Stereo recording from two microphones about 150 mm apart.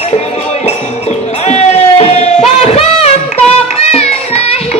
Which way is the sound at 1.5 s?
45° left (ahead or behind).